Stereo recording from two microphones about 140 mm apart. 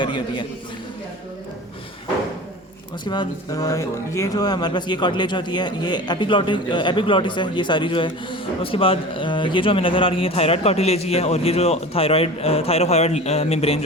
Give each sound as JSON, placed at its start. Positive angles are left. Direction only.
{"t": 0.0, "sound": "speech", "side_deg": 35}
{"t": 3.0, "sound": "speech", "side_deg": 30}